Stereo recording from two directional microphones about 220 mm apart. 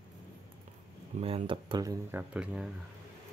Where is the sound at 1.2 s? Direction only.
25° right (ahead or behind); by 2.7 s 5° right (ahead or behind).